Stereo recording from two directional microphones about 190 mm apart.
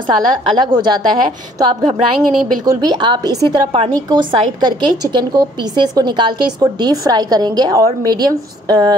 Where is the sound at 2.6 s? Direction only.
20° right (ahead or behind).